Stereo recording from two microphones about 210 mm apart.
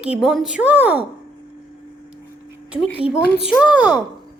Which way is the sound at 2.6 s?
5° right (ahead or behind).